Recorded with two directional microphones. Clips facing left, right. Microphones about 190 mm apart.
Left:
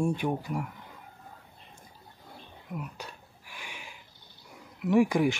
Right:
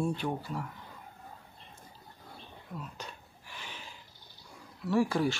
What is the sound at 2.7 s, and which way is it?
Speech, 15° left (ahead or behind).